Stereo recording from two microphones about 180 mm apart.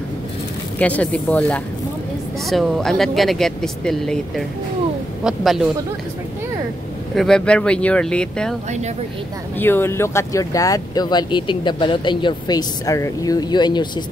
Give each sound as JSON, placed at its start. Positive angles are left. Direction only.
{"t": 0.7, "sound": "speech", "side_deg": 10}
{"t": 7.2, "sound": "speech", "side_deg": 5}
{"t": 9.6, "sound": "speech", "side_deg": 10}